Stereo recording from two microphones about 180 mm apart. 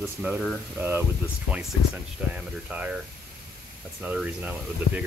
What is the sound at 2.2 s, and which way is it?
Speech, 5° right (ahead or behind).